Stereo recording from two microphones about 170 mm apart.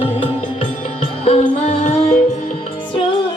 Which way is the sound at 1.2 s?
40° left (ahead or behind).